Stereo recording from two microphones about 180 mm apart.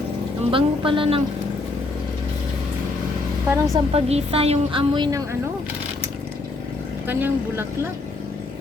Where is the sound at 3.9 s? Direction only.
30° right (ahead or behind).